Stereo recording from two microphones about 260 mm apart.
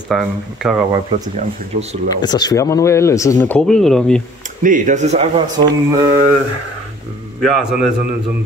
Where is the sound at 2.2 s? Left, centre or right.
Centre.